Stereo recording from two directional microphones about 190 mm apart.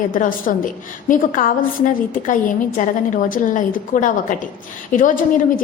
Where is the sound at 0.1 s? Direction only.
45° left (ahead or behind).